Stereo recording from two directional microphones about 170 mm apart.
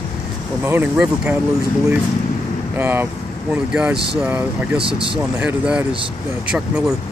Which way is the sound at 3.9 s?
70° right (ahead or behind).